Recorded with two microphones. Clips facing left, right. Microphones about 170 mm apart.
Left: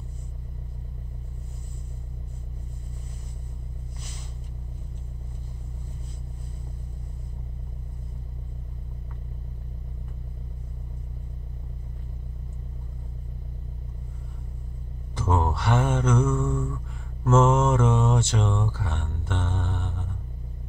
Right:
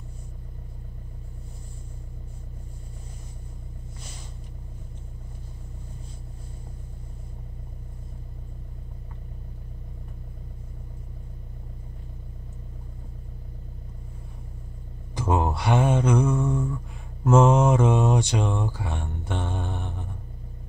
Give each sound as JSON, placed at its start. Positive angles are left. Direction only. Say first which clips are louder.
{"t": 15.1, "sound": "mantra", "louder": "right 1 dB", "side_deg": -15}